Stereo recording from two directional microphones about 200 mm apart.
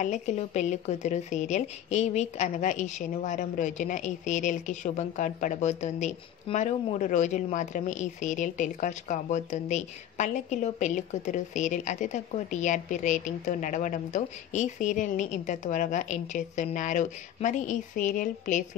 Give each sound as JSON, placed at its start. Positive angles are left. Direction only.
{"t": 0.0, "sound": "a woman's voice", "side_deg": 35}